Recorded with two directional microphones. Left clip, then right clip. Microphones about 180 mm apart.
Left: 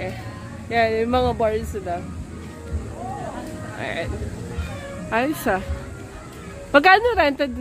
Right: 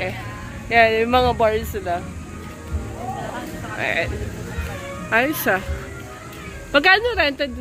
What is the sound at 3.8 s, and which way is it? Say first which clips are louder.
Speech: right 6 dB; 10° left (ahead or behind).